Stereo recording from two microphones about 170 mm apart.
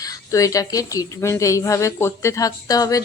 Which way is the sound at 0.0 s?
20° left (ahead or behind).